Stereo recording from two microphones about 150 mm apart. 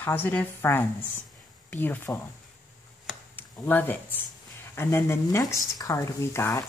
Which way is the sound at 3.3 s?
15° left (ahead or behind).